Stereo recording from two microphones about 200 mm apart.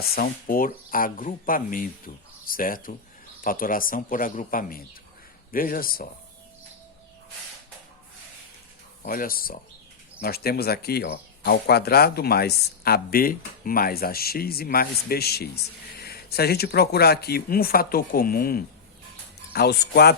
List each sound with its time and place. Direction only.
0.2 s speech: 45° left (ahead or behind)
9.0 s speech: 45° left (ahead or behind)